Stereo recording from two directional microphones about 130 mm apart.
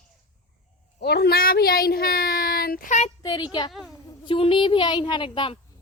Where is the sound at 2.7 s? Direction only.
80° left.